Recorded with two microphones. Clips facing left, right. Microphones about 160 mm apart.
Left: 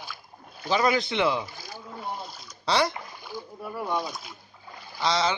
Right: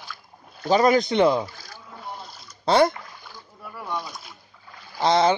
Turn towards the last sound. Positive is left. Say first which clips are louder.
# right 6 dB
turn(degrees=-55)  # may be behind; listen again after turning